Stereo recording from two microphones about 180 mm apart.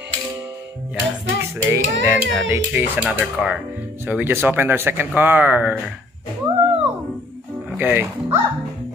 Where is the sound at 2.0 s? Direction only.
90° right.